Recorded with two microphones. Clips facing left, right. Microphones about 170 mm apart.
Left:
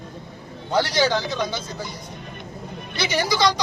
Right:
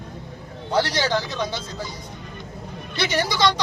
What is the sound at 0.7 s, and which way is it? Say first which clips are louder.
Speech: left 2 dB; centre (ahead or behind).